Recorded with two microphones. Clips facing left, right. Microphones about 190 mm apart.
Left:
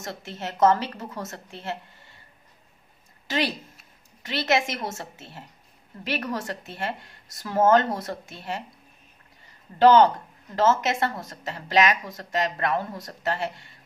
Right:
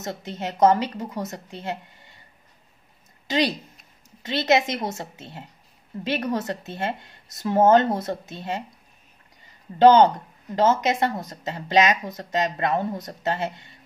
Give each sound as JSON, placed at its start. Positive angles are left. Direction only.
{"t": 0.0, "sound": "a woman's voice", "side_deg": -20}
{"t": 3.3, "sound": "speech", "side_deg": -15}
{"t": 9.8, "sound": "speech", "side_deg": -20}